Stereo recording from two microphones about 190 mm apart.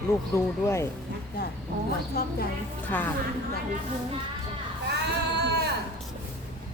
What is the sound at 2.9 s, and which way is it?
Speech, 10° left (ahead or behind).